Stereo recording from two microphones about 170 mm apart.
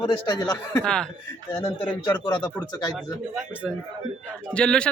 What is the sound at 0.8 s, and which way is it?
Speech, 5° left (ahead or behind).